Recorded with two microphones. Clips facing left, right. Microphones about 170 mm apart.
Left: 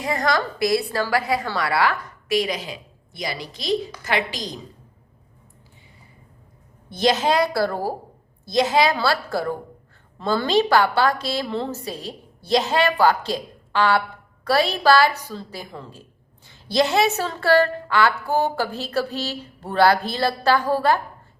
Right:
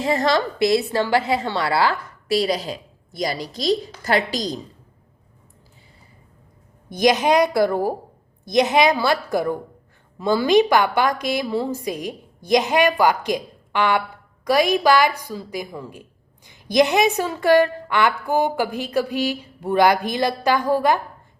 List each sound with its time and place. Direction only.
0.0 s a woman's voice: 25° right (ahead or behind)
6.9 s a woman's voice: 15° right (ahead or behind)